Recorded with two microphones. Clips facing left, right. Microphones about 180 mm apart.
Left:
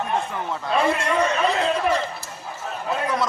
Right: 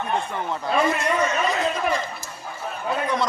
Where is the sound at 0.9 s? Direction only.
30° left (ahead or behind).